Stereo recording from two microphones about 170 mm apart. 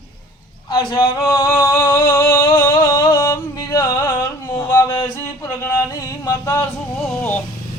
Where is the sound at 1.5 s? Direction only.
15° left (ahead or behind).